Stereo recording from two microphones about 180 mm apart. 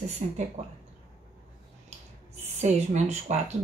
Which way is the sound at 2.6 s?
40° right (ahead or behind).